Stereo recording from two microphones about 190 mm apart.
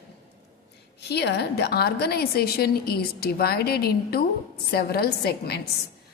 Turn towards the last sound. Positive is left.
turn(degrees=55)  # may be behind; listen again after turning